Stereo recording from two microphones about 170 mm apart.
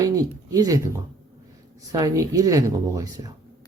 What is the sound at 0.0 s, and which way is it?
Speech, 20° right (ahead or behind).